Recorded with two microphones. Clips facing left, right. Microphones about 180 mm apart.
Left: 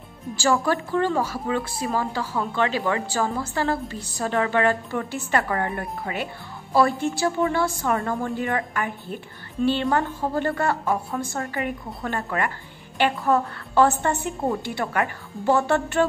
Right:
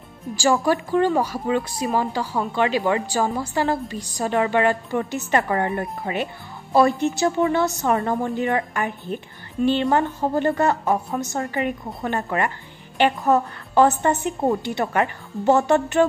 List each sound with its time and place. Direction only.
0.4 s a woman's voice: 15° right (ahead or behind)